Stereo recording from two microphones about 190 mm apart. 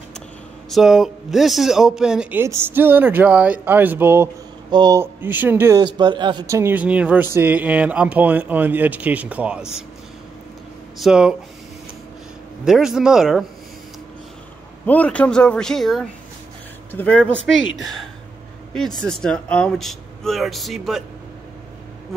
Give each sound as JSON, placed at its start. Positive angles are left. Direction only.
{"t": 0.7, "sound": "speech", "side_deg": 0}
{"t": 4.6, "sound": "speech", "side_deg": -20}
{"t": 5.9, "sound": "speech", "side_deg": -25}
{"t": 11.0, "sound": "speech", "side_deg": -5}
{"t": 12.6, "sound": "speech", "side_deg": 0}
{"t": 14.9, "sound": "speech", "side_deg": 5}
{"t": 17.6, "sound": "speech", "side_deg": 75}
{"t": 18.7, "sound": "speech", "side_deg": 0}